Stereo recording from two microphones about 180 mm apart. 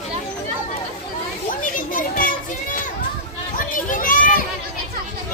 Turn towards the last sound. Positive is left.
turn(degrees=50)  # may be behind; listen again after turning